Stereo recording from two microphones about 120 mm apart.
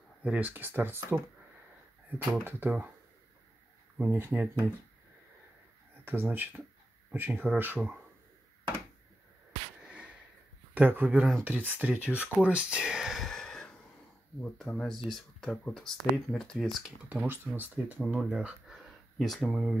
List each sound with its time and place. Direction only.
0.2 s speech: 10° right (ahead or behind)
2.4 s speech: 15° right (ahead or behind)
4.0 s speech: 15° right (ahead or behind)
6.0 s speech: 15° right (ahead or behind)
9.8 s a sound: 10° right (ahead or behind)
10.7 s speech: 15° right (ahead or behind)
12.2 s a sound: 10° right (ahead or behind)
14.4 s speech: 5° left (ahead or behind)
17.1 s speech: 15° right (ahead or behind)
19.1 s speech: centre (ahead or behind)